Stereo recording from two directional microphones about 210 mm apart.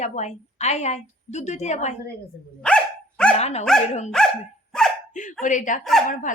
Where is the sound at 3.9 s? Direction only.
30° left (ahead or behind).